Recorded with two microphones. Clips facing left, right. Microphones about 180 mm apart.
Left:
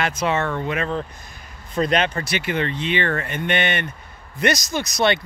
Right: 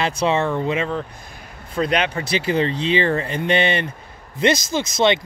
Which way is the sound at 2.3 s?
30° right (ahead or behind).